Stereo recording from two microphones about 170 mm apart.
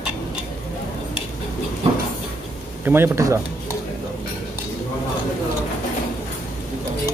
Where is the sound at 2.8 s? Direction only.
15° right (ahead or behind).